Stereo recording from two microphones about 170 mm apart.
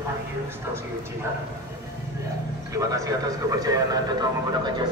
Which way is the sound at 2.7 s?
20° right (ahead or behind).